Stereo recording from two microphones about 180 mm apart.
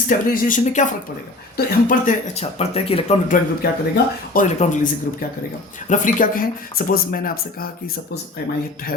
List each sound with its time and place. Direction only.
0.1 s speech: 50° left (ahead or behind)
3.2 s speech: 55° left (ahead or behind)
4.4 s speech: 40° left (ahead or behind)
5.9 s speech: 45° left (ahead or behind)